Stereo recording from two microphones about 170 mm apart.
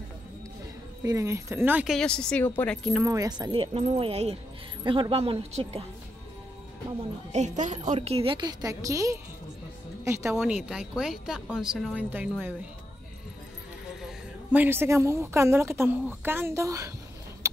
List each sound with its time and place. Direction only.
1.0 s a woman's voice: 20° right (ahead or behind)
2.0 s speech: 5° left (ahead or behind)
3.0 s a woman's voice: 20° right (ahead or behind); by 5.9 s 35° right (ahead or behind)
7.3 s a woman's voice: 45° right (ahead or behind); by 10.4 s 15° right (ahead or behind)
10.4 s speech: 5° right (ahead or behind)
14.0 s a woman's voice: 10° right (ahead or behind)